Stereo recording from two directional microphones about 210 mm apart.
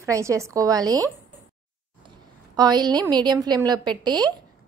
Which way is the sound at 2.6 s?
20° right (ahead or behind).